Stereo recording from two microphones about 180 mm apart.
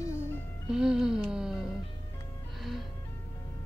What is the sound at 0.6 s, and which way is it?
Music, 5° right (ahead or behind).